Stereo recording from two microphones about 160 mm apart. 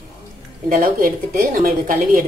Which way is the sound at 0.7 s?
60° right (ahead or behind).